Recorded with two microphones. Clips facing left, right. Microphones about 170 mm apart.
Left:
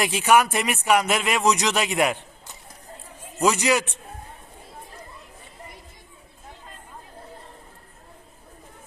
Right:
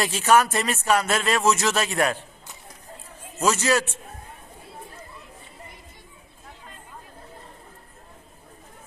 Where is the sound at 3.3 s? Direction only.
15° left (ahead or behind).